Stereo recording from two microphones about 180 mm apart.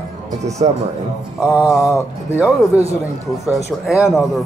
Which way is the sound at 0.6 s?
30° right (ahead or behind).